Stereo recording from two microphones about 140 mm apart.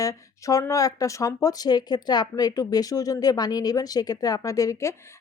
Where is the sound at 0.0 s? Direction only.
25° left (ahead or behind).